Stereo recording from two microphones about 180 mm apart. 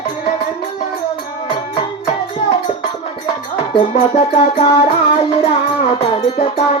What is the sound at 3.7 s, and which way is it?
Music, 30° left (ahead or behind).